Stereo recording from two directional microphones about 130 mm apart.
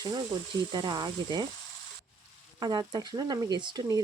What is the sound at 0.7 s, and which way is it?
Speech, 35° right (ahead or behind).